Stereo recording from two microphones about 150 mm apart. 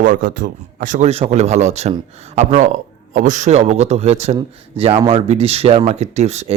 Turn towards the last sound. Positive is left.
turn(degrees=-45)  # may be behind; listen again after turning